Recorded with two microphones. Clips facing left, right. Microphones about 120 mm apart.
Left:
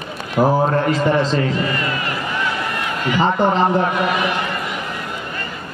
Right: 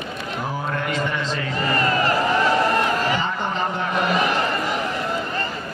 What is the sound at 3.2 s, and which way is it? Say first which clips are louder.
Speech: left 9 dB; 40° left (ahead or behind).